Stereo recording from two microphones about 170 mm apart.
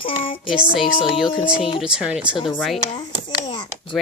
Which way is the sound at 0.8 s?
30° left (ahead or behind).